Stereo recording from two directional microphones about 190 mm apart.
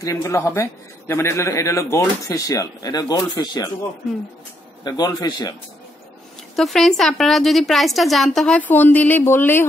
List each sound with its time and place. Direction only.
0.0 s a man's voice: 15° left (ahead or behind)
4.8 s a man's voice: 20° left (ahead or behind)
6.5 s a woman's voice: centre (ahead or behind)